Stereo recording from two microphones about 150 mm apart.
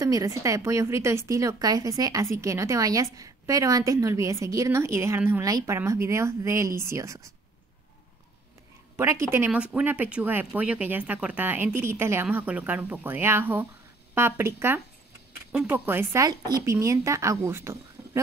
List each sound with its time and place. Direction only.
0.0 s a woman's voice: 20° right (ahead or behind)
8.9 s a woman's voice: 20° right (ahead or behind)